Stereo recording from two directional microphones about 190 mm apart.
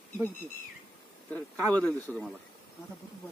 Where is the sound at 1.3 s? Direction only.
5° left (ahead or behind).